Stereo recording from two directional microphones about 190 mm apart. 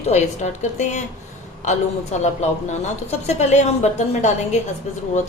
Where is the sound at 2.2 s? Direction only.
35° left (ahead or behind).